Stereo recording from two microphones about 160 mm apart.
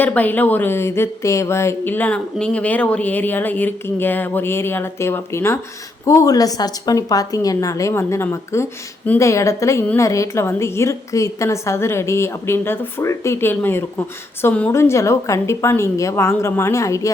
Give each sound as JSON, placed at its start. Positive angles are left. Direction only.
{"t": 0.0, "sound": "a woman's voice", "side_deg": 10}